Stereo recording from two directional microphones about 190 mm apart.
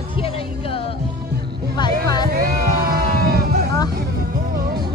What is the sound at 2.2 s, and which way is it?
Music, 50° right (ahead or behind).